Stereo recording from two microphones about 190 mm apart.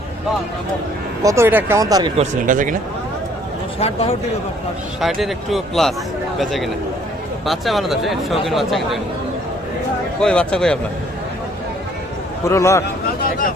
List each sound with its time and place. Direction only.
1.2 s speech: 15° right (ahead or behind)
2.1 s speech: 45° right (ahead or behind)
3.8 s speech: 30° left (ahead or behind)
4.9 s speech: centre (ahead or behind)
10.2 s speech: 5° left (ahead or behind)
12.5 s a man's voice: 15° left (ahead or behind)